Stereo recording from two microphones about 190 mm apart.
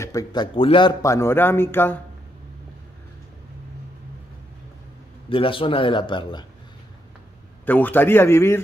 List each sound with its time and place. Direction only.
0.0 s speech: 20° left (ahead or behind)
5.3 s speech: 30° left (ahead or behind)
7.6 s speech: 10° left (ahead or behind)